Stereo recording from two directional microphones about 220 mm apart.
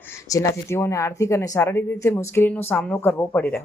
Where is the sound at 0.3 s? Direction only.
15° left (ahead or behind).